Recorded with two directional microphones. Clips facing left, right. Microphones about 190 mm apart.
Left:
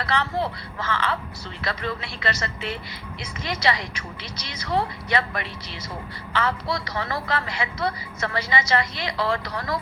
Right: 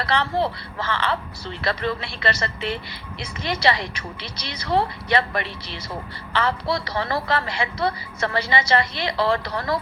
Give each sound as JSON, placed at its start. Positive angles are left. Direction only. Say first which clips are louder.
{"t": 0.0, "sound": "a woman's voice", "louder": "right 3 dB", "side_deg": -30}